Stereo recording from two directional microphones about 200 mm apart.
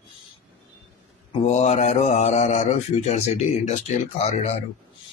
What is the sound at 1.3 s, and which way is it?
Speech, 35° left (ahead or behind).